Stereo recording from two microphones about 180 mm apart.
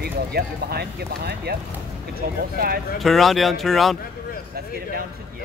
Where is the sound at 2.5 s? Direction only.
55° right (ahead or behind).